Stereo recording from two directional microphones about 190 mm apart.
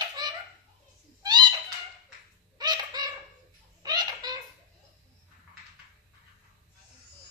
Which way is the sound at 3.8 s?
20° right (ahead or behind).